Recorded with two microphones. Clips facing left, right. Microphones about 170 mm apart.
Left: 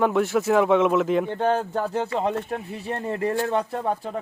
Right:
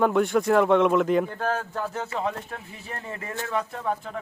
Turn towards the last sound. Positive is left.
turn(degrees=30)  # may be behind; listen again after turning